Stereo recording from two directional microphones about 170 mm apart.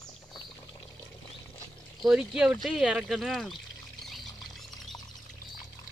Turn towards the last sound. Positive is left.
turn(degrees=0)  # may be behind; listen again after turning